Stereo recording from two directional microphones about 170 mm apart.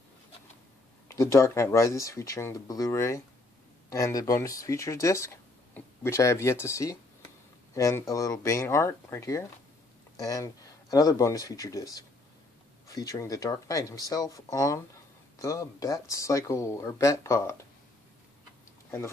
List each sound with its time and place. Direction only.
1.0 s speech: 15° left (ahead or behind)